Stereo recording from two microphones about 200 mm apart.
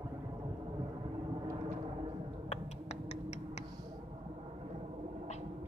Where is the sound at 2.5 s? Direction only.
35° left (ahead or behind).